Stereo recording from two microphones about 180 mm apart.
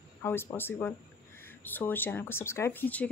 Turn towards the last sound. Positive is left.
turn(degrees=10)  # may be behind; listen again after turning